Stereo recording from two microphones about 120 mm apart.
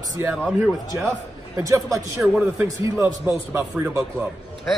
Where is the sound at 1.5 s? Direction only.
25° right (ahead or behind).